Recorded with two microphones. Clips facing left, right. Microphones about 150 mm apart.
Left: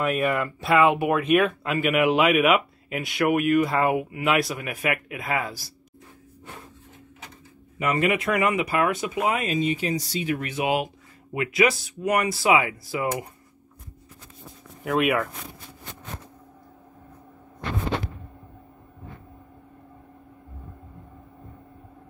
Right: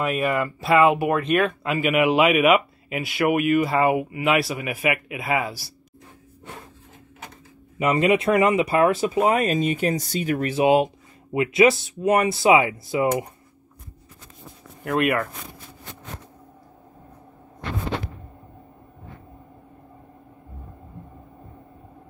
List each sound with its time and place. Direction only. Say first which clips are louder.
0.0 s speech: right 1 dB; centre (ahead or behind)
7.8 s speech: right 4 dB; 20° right (ahead or behind)
14.8 s speech: right 1 dB; centre (ahead or behind)